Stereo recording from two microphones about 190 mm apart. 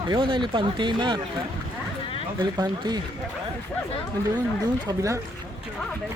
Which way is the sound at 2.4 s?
20° right (ahead or behind).